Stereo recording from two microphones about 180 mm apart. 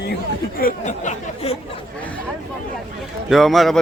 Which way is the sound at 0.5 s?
50° left (ahead or behind).